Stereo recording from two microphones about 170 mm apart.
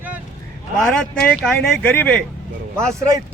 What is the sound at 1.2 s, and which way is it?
Speech, 5° left (ahead or behind).